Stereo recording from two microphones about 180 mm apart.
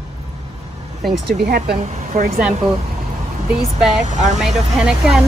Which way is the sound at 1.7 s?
40° right (ahead or behind).